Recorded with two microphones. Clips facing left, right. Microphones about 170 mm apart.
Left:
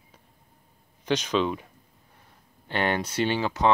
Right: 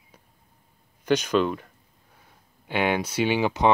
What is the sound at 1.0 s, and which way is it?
Speech, 5° right (ahead or behind).